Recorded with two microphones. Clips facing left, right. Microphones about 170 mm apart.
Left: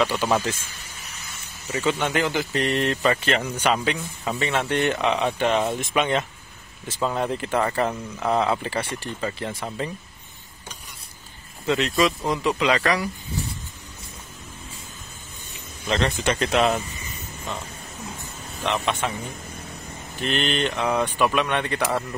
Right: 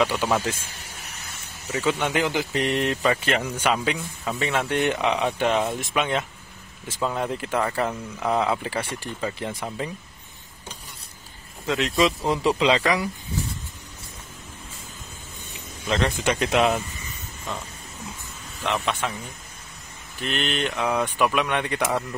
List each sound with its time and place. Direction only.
0.0 s speech: 10° right (ahead or behind)
1.7 s speech: 5° right (ahead or behind)
9.5 s speech: centre (ahead or behind)
11.6 s speech: centre (ahead or behind)
12.3 s speech: 30° right (ahead or behind)
15.9 s speech: 10° right (ahead or behind)
18.6 s speech: centre (ahead or behind)
20.2 s speech: 5° right (ahead or behind)